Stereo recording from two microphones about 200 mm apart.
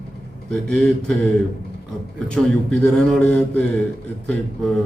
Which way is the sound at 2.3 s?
5° left (ahead or behind).